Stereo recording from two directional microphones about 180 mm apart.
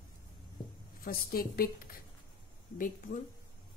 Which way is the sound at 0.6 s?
25° left (ahead or behind).